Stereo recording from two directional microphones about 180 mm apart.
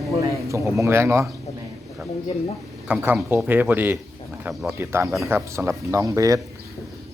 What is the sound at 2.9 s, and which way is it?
Speech, 10° right (ahead or behind).